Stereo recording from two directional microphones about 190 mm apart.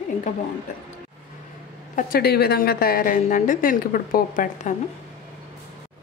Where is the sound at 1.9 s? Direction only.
45° left (ahead or behind).